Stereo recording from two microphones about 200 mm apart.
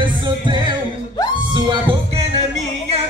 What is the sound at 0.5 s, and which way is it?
Music, 25° right (ahead or behind).